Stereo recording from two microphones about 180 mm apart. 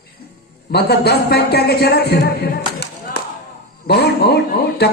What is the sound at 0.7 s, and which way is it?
A man's voice, 65° left (ahead or behind).